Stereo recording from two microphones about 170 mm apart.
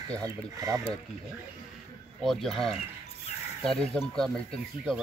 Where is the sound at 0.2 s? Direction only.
20° right (ahead or behind).